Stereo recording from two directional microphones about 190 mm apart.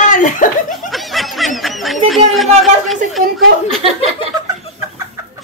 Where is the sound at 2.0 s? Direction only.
Centre (ahead or behind).